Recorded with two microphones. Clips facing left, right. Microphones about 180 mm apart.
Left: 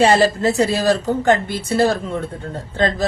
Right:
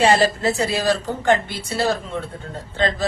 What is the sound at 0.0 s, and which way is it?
A woman's voice, 40° left (ahead or behind).